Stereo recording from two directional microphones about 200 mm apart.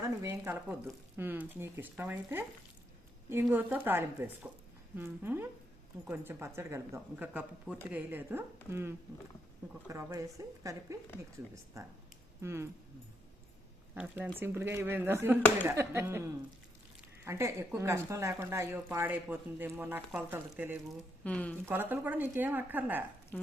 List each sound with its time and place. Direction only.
0.2 s speech: 15° right (ahead or behind)
3.5 s speech: 10° right (ahead or behind)
13.9 s speech: 5° right (ahead or behind)
21.2 s speech: 5° left (ahead or behind)
21.7 s speech: 10° right (ahead or behind)
23.3 s speech: 10° left (ahead or behind)